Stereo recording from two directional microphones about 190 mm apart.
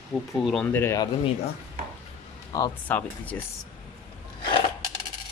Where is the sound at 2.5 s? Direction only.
20° left (ahead or behind).